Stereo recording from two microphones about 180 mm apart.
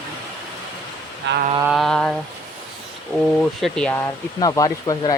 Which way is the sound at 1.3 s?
70° right (ahead or behind).